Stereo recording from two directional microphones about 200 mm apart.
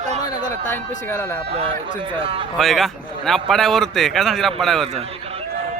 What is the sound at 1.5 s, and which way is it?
Speech, 25° right (ahead or behind).